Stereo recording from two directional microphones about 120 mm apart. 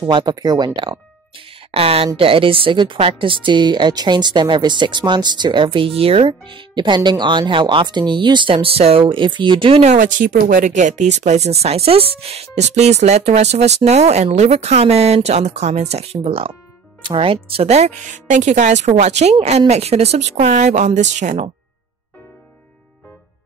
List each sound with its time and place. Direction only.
0.1 s speech: 40° right (ahead or behind)
0.7 s a sound: 45° right (ahead or behind)
2.1 s speech: 50° right (ahead or behind)
5.9 s speech: 55° right (ahead or behind)
9.8 s speech: 90° right